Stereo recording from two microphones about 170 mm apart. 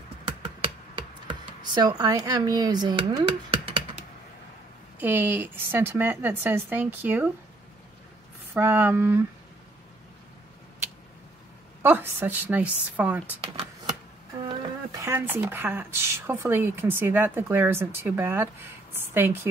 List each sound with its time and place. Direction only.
1.2 s speech: 25° right (ahead or behind)
4.9 s speech: 10° right (ahead or behind)
8.5 s speech: 10° right (ahead or behind)
11.8 s speech: 10° right (ahead or behind)
14.4 s speech: 30° right (ahead or behind); by 19.4 s 15° right (ahead or behind)